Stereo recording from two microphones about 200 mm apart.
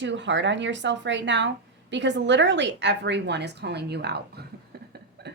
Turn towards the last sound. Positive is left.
turn(degrees=-55)  # may be behind; listen again after turning